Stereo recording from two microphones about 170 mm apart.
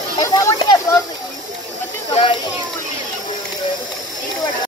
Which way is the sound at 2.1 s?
30° left (ahead or behind).